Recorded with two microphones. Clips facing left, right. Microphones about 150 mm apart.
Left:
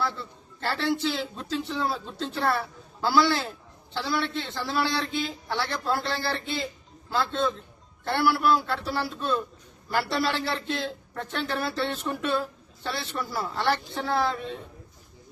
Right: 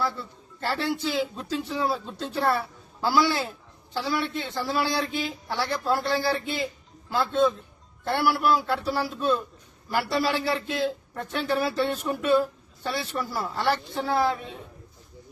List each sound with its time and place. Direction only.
0.0 s a man's voice: 5° right (ahead or behind)